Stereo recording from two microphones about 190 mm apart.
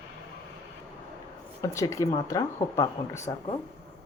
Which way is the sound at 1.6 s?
15° left (ahead or behind).